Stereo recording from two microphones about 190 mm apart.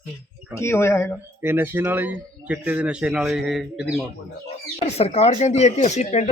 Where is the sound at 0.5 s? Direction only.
15° left (ahead or behind).